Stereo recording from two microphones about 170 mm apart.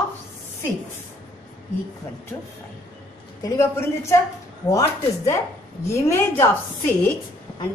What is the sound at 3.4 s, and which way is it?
A woman's voice, 20° left (ahead or behind).